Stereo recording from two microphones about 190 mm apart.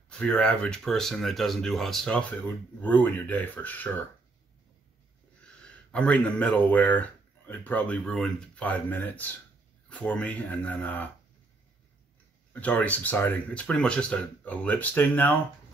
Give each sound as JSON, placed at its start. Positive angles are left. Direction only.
{"t": 0.1, "sound": "speech", "side_deg": 5}
{"t": 5.4, "sound": "speech", "side_deg": 5}
{"t": 12.5, "sound": "speech", "side_deg": 10}